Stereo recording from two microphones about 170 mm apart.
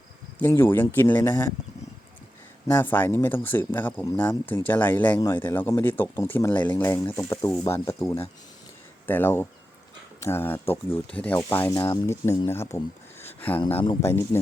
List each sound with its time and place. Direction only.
0.3 s speech: 10° left (ahead or behind)
2.6 s speech: 10° left (ahead or behind)
13.2 s a sound: 10° left (ahead or behind)
14.0 s speech: 15° left (ahead or behind)